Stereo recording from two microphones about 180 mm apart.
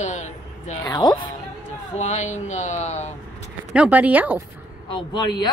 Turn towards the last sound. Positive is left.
turn(degrees=25)  # may be behind; listen again after turning